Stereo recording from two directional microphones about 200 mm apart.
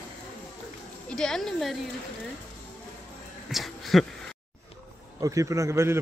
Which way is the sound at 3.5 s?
Centre (ahead or behind).